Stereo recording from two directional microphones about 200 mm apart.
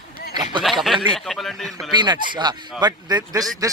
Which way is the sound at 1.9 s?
20° right (ahead or behind).